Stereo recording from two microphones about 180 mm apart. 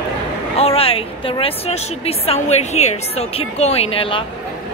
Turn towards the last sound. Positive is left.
turn(degrees=30)  # may be behind; listen again after turning